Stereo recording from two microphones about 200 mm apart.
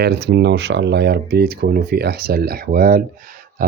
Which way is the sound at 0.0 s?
60° right (ahead or behind).